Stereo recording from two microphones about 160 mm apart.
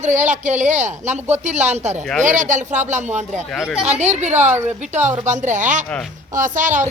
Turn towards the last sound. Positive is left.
turn(degrees=-50)  # may be behind; listen again after turning